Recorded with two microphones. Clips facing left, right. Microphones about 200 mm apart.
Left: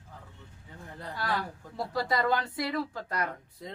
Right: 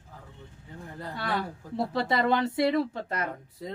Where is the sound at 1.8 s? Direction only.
25° right (ahead or behind).